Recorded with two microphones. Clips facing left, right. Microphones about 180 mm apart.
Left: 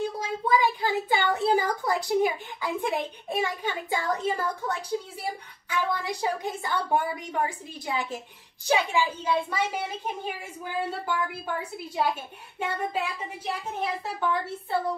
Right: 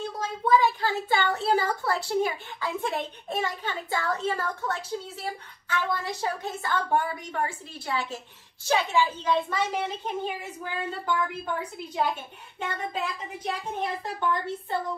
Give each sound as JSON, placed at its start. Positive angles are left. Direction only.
{"t": 0.2, "sound": "a child's voice", "side_deg": 10}